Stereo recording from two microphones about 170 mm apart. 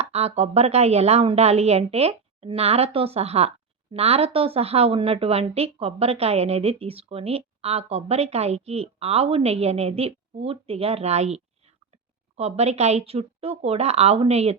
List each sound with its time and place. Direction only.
0.0 s speech: 40° right (ahead or behind)